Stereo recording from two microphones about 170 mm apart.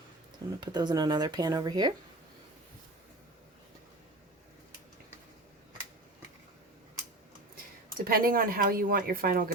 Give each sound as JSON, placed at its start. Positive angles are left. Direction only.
{"t": 0.6, "sound": "speech", "side_deg": -25}
{"t": 8.0, "sound": "speech", "side_deg": -60}